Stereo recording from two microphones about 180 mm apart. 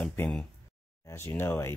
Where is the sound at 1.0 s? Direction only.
15° left (ahead or behind).